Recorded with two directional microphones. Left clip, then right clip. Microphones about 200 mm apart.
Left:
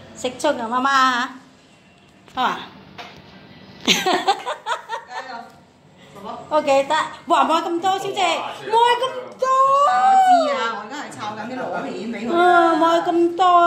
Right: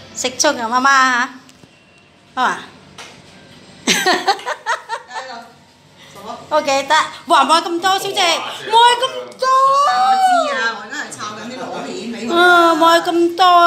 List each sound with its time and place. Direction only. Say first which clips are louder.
0.2 s a woman's voice: right 5 dB; 5° right (ahead or behind)
2.3 s a woman's voice: right 4 dB; 10° right (ahead or behind)
3.8 s music: right 3 dB; 10° right (ahead or behind)
6.5 s a woman's voice: right 3 dB; centre (ahead or behind)
9.5 s speech: right 3 dB; 20° left (ahead or behind)
10.6 s a sound: right 4 dB; 40° left (ahead or behind)
12.3 s a woman's voice: right 4 dB; 5° right (ahead or behind)